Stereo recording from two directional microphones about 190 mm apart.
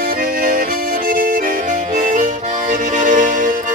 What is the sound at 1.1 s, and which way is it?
Accordion, 50° right (ahead or behind).